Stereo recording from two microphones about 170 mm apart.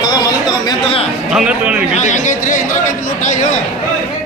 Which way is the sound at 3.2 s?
45° left (ahead or behind).